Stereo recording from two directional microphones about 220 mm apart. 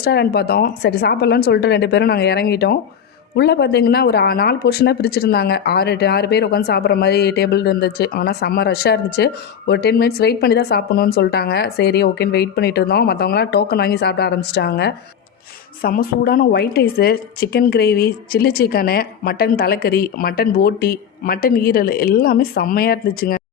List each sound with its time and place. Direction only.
0.0 s speech: 45° left (ahead or behind)